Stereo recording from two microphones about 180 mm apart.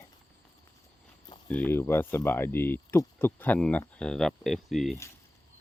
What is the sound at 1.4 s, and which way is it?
Speech, 10° left (ahead or behind).